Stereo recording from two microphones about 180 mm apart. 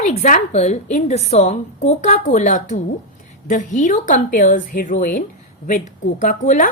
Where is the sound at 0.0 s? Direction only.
40° left (ahead or behind).